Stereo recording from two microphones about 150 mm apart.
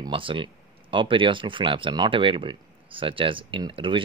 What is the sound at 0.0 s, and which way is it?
Speech, 35° right (ahead or behind).